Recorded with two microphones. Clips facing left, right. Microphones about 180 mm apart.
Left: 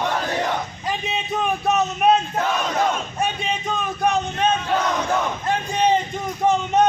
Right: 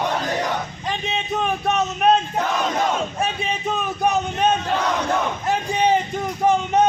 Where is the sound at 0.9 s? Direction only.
5° left (ahead or behind).